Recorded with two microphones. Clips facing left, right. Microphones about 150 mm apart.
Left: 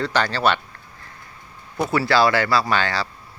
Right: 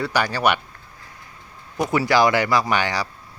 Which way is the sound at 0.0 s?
10° right (ahead or behind).